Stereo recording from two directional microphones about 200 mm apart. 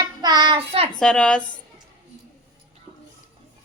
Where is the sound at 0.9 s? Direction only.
5° left (ahead or behind).